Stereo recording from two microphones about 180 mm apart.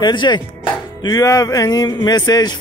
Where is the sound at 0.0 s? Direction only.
25° left (ahead or behind).